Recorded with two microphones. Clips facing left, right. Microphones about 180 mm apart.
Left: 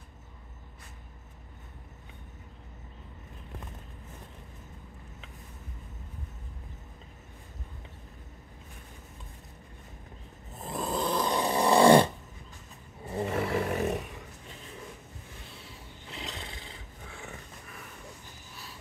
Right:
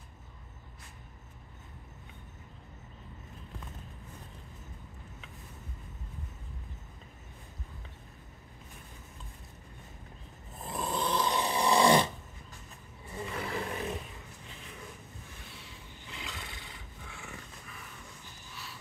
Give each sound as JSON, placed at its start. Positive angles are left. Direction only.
{"t": 10.6, "sound": "snoring", "side_deg": 35}
{"t": 13.1, "sound": "roar", "side_deg": 45}
{"t": 13.5, "sound": "roar", "side_deg": 75}
{"t": 16.1, "sound": "roar", "side_deg": 35}